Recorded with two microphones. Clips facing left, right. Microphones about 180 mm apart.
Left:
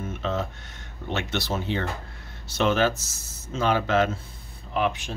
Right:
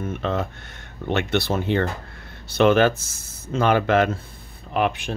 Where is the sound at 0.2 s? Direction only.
60° right (ahead or behind).